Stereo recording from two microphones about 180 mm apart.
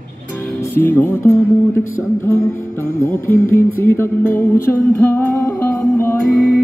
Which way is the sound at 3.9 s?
15° left (ahead or behind).